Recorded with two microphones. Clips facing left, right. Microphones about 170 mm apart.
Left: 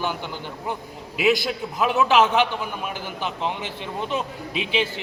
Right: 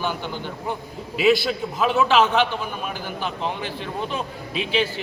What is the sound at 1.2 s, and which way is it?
A man's voice, 15° left (ahead or behind).